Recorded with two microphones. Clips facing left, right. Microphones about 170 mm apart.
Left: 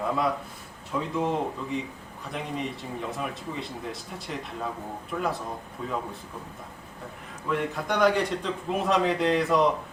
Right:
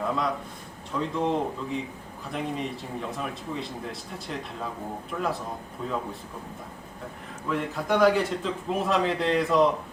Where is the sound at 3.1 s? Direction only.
Centre (ahead or behind).